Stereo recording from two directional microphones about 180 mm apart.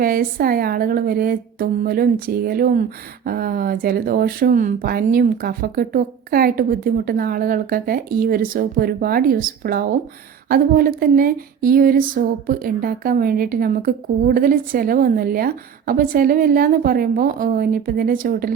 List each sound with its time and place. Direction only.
0.0 s speech: 55° right (ahead or behind)